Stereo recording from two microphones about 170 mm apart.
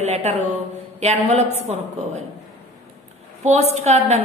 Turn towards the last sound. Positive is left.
turn(degrees=-40)  # may be behind; listen again after turning